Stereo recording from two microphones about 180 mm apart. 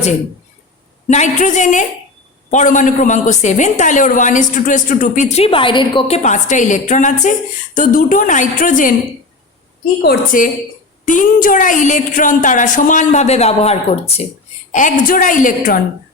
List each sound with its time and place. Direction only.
1.0 s a woman's voice: 40° left (ahead or behind)
10.0 s a woman's voice: 55° left (ahead or behind)